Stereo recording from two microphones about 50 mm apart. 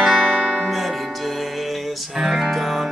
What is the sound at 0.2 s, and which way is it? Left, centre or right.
Music, centre.